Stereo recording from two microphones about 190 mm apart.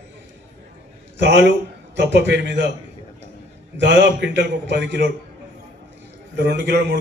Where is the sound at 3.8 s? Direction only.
65° right (ahead or behind).